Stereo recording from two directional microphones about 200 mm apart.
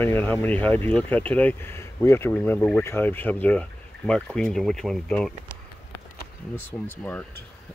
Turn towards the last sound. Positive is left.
turn(degrees=5)  # may be behind; listen again after turning